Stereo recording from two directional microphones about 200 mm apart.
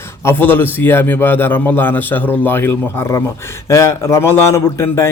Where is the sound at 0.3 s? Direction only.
10° left (ahead or behind).